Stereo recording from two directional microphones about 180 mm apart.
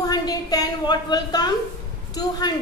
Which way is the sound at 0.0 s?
20° left (ahead or behind).